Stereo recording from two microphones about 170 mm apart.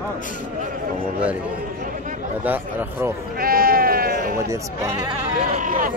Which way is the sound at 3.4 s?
60° right (ahead or behind).